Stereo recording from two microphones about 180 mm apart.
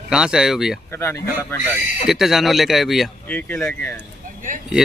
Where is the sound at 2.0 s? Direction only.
Centre (ahead or behind).